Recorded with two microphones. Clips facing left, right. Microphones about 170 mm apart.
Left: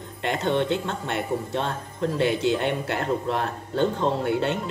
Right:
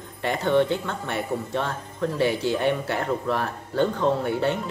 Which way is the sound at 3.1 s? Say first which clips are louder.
Even; 20° left (ahead or behind).